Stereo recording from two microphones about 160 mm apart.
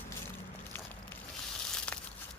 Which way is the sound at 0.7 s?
10° left (ahead or behind).